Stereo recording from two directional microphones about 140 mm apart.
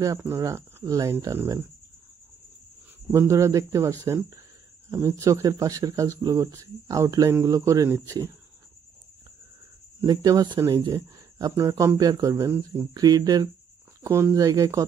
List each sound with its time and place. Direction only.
0.2 s speech: 25° right (ahead or behind)
3.1 s speech: 20° right (ahead or behind)
10.0 s speech: 30° right (ahead or behind)